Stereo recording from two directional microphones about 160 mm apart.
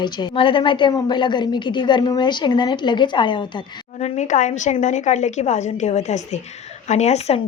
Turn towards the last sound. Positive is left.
turn(degrees=45)  # may be behind; listen again after turning